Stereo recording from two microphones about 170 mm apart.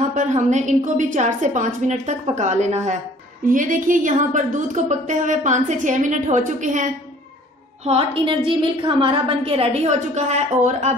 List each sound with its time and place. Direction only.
0.1 s a woman's voice: 45° right (ahead or behind)
7.8 s a woman's voice: 35° right (ahead or behind)